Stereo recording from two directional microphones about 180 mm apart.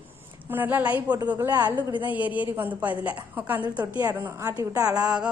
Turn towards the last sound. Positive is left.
turn(degrees=-5)  # may be behind; listen again after turning